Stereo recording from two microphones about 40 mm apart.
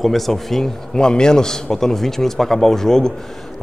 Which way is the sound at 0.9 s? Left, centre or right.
Left.